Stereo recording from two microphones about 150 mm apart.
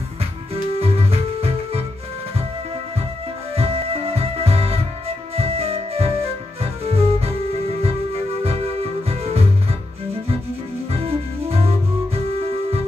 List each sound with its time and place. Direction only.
0.7 s music: 40° right (ahead or behind)
3.5 s music: 40° right (ahead or behind)
10.9 s music: 40° right (ahead or behind)